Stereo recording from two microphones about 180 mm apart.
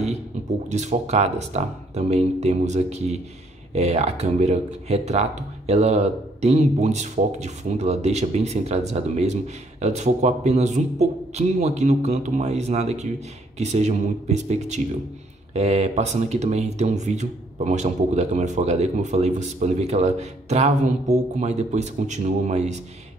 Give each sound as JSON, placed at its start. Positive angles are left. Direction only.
{"t": 0.7, "sound": "speech", "side_deg": -40}